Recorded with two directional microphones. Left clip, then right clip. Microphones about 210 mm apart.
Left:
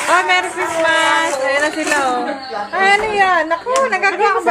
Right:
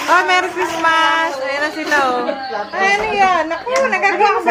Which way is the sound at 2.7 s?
15° left (ahead or behind).